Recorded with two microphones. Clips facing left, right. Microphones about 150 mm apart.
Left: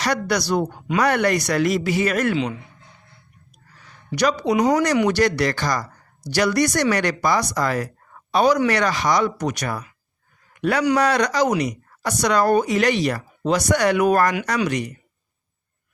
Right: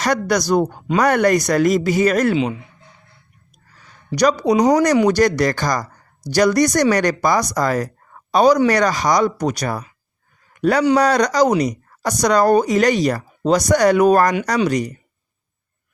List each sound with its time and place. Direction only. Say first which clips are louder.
0.0 s speech: right 4 dB; 45° right (ahead or behind)
2.3 s a man's voice: right 4 dB; 20° right (ahead or behind)
4.1 s a woman's voice: right 4 dB; 40° right (ahead or behind)